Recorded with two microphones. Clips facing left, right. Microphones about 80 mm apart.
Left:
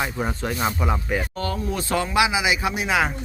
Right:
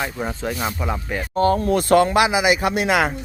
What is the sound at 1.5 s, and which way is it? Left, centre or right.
Speech, right.